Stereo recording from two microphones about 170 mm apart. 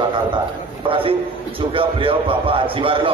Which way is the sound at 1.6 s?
30° right (ahead or behind).